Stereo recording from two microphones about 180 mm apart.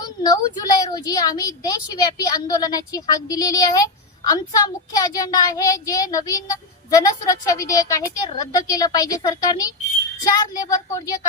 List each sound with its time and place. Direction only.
0.0 s a woman's voice: 20° left (ahead or behind)